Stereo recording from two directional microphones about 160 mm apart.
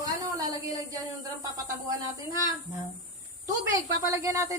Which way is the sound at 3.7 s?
20° right (ahead or behind).